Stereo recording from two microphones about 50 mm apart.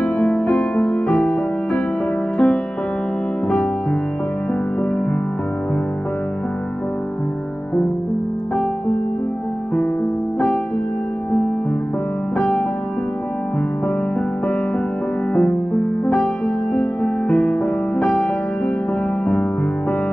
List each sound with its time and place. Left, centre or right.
0.0 s music: left
1.0 s music: centre
12.4 s music: centre
16.7 s music: centre